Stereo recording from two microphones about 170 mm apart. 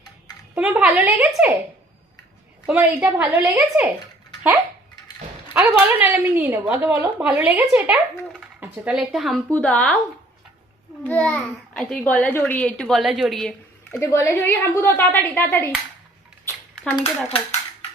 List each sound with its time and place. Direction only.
0.5 s speech: 5° right (ahead or behind)
2.6 s speech: 10° right (ahead or behind)
5.5 s a child's voice: 10° right (ahead or behind); by 10.0 s 5° left (ahead or behind)
11.0 s a child's voice: 10° left (ahead or behind)
14.0 s speech: 15° left (ahead or behind)
17.0 s dishes: 35° left (ahead or behind)